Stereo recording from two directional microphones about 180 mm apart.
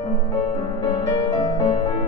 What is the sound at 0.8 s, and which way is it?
Music, 25° left (ahead or behind).